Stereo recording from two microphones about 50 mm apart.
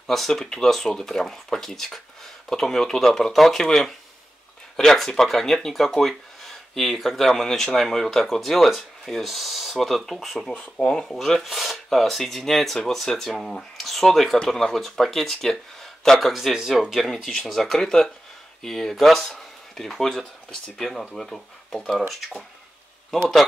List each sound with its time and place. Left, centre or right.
0.0 s speech: centre
10.5 s speech: left
10.9 s speech: centre
11.1 s speech: centre